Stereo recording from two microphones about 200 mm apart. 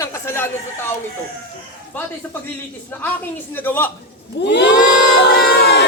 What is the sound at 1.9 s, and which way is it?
A man's voice, 10° left (ahead or behind).